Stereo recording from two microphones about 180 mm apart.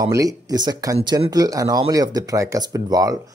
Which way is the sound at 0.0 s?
20° right (ahead or behind).